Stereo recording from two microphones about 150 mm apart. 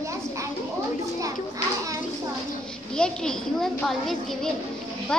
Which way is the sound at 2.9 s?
5° left (ahead or behind).